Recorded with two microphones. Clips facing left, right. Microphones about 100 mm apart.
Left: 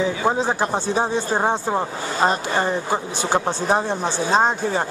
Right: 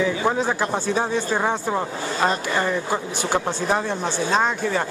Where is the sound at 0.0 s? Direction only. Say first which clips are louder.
Left 1 dB; 25° left (ahead or behind).